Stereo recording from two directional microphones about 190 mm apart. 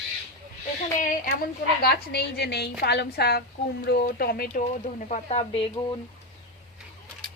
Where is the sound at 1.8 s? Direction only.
60° left (ahead or behind); by 5.7 s 30° left (ahead or behind).